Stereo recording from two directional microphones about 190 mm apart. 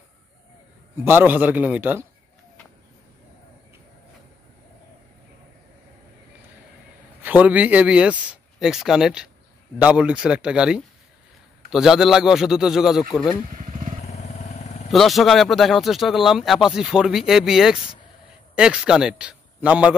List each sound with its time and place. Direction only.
1.0 s speech: 10° right (ahead or behind)
7.2 s speech: 10° right (ahead or behind)
13.5 s motorcycle: 40° right (ahead or behind)
14.0 s vehicle: 35° left (ahead or behind)
14.9 s a man's voice: centre (ahead or behind)